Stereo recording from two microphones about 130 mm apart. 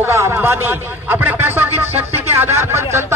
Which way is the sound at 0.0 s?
20° right (ahead or behind).